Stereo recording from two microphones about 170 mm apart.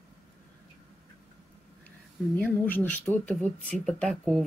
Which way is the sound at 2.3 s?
10° left (ahead or behind).